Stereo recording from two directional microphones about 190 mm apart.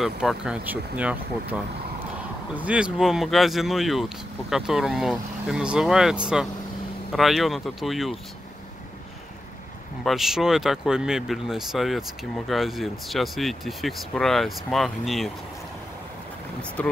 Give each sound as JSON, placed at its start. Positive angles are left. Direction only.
{"t": 0.0, "sound": "speech", "side_deg": 0}
{"t": 2.5, "sound": "speech", "side_deg": -5}
{"t": 10.0, "sound": "speech", "side_deg": 0}
{"t": 16.8, "sound": "speech", "side_deg": 5}